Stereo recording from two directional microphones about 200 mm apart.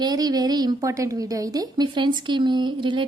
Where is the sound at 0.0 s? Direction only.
20° right (ahead or behind).